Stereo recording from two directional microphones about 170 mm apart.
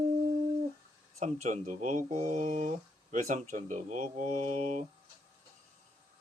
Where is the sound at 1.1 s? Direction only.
45° right (ahead or behind).